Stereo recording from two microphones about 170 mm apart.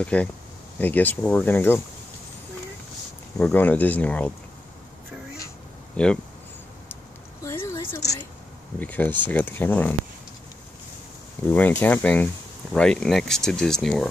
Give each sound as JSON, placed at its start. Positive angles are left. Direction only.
{"t": 0.0, "sound": "speech", "side_deg": 5}
{"t": 3.3, "sound": "speech", "side_deg": 10}
{"t": 6.0, "sound": "speech", "side_deg": 5}
{"t": 7.4, "sound": "a sound", "side_deg": 15}
{"t": 8.7, "sound": "speech", "side_deg": 10}
{"t": 11.5, "sound": "speech", "side_deg": 10}